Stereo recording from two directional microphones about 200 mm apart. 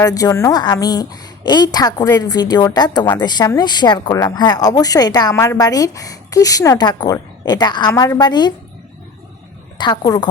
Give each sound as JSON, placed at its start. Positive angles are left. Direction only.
{"t": 0.0, "sound": "a woman's voice", "side_deg": 15}
{"t": 9.7, "sound": "a woman's voice", "side_deg": 20}